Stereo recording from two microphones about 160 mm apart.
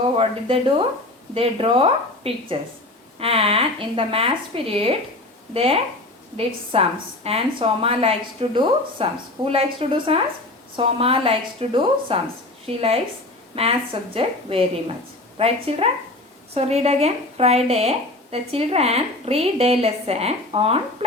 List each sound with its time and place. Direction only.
0.2 s speech: 35° right (ahead or behind)